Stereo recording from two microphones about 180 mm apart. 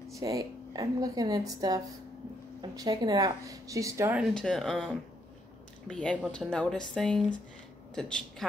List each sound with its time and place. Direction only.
0.1 s a woman's voice: 20° right (ahead or behind)
4.2 s speech: 5° left (ahead or behind)